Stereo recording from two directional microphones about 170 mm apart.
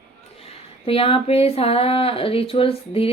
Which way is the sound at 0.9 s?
35° left (ahead or behind).